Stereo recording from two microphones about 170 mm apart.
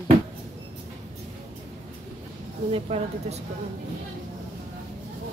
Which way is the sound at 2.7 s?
40° right (ahead or behind).